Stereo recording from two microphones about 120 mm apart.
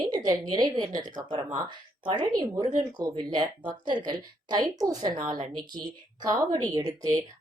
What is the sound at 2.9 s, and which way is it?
Speech, 35° right (ahead or behind).